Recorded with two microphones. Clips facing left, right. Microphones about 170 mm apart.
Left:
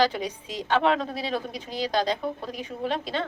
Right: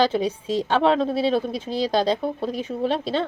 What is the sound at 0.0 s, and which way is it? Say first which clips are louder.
A woman's voice: right 4 dB; 30° right (ahead or behind).